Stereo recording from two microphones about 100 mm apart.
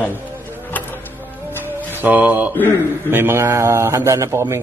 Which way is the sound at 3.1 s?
25° right (ahead or behind).